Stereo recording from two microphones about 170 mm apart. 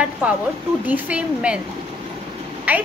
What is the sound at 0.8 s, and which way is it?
Speech, 10° right (ahead or behind).